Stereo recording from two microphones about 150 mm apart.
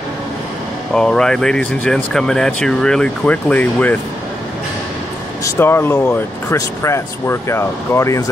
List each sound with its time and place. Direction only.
0.9 s speech: 5° left (ahead or behind)
5.4 s speech: 15° left (ahead or behind)